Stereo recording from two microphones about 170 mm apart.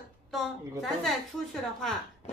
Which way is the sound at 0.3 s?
Centre (ahead or behind).